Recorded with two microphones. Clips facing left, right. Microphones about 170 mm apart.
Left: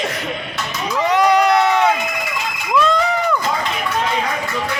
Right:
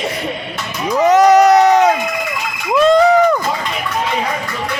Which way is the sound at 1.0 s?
45° right (ahead or behind).